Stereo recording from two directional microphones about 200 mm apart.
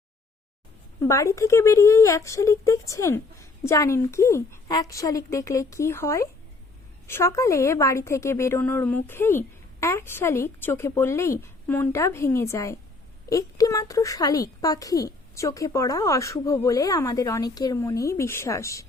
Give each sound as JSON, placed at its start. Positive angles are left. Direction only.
{"t": 0.9, "sound": "speech", "side_deg": 15}